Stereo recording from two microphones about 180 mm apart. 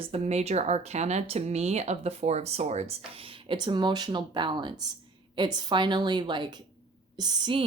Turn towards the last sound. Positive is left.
turn(degrees=-25)  # may be behind; listen again after turning